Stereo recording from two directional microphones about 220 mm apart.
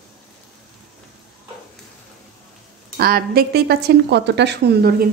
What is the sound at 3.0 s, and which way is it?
A woman's voice, 45° right (ahead or behind).